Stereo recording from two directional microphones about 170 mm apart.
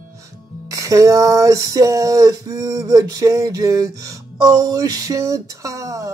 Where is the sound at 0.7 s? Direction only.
20° right (ahead or behind).